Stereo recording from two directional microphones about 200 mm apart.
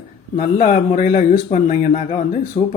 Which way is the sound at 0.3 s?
40° left (ahead or behind).